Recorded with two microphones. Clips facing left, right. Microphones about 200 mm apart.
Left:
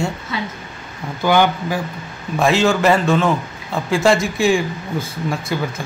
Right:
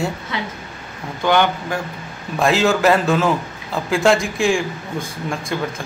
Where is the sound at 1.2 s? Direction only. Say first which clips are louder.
Left 2 dB; 10° left (ahead or behind).